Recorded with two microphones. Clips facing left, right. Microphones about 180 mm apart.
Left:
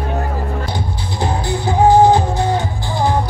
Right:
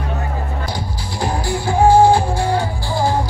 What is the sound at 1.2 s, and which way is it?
Music, 20° left (ahead or behind).